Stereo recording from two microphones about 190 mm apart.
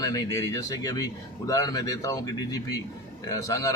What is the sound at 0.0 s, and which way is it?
A man's voice, 20° left (ahead or behind).